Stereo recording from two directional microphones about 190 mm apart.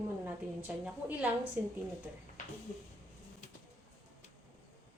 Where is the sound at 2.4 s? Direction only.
40° left (ahead or behind).